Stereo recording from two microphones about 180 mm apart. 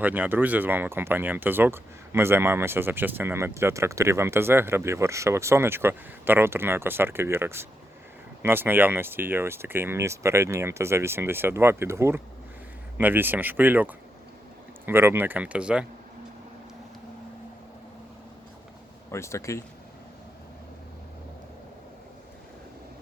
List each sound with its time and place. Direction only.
0.0 s speech: 10° right (ahead or behind)
19.1 s speech: 15° left (ahead or behind)